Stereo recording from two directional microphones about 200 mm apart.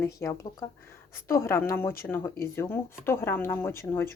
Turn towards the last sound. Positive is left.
turn(degrees=15)  # may be behind; listen again after turning